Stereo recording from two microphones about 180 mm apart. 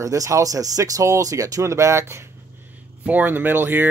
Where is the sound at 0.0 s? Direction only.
15° right (ahead or behind).